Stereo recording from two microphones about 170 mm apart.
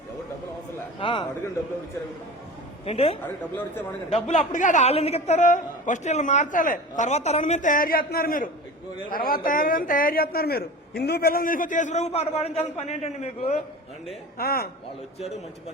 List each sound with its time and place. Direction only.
0.9 s a sound: 30° left (ahead or behind)
2.8 s a man's voice: 35° left (ahead or behind)
14.3 s a man's voice: 65° left (ahead or behind)